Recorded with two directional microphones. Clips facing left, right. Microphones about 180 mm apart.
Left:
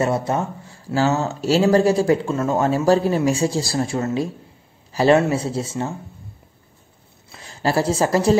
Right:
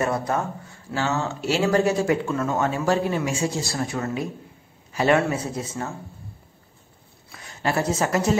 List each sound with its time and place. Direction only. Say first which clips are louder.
0.0 s speech: left 3 dB; 25° left (ahead or behind)
7.3 s a woman's voice: left 4 dB; 30° left (ahead or behind)